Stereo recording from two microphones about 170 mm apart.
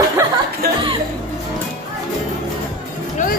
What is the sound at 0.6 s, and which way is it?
Music, 65° right (ahead or behind).